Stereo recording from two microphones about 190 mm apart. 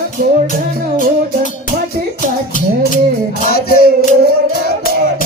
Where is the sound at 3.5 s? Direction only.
55° left (ahead or behind).